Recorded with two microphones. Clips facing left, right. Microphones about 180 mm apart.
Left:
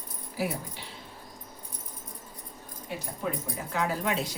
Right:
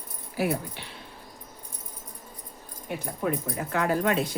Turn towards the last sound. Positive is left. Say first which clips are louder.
# right 5 dB
turn(degrees=-55)  # may be behind; listen again after turning